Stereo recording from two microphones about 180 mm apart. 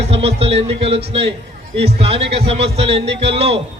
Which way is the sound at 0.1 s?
35° right (ahead or behind).